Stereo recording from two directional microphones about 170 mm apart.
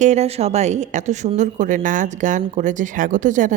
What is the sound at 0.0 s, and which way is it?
A woman's voice, 40° right (ahead or behind).